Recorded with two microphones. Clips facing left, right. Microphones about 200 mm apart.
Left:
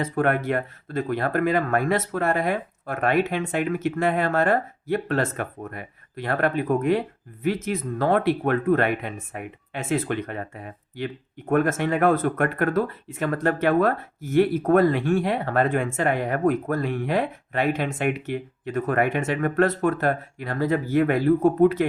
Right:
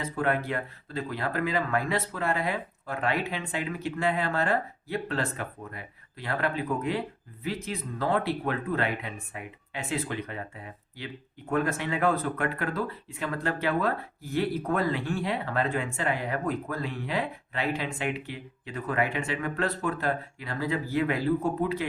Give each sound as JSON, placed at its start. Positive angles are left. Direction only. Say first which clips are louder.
{"t": 0.0, "sound": "speech", "louder": "left 5 dB", "side_deg": 50}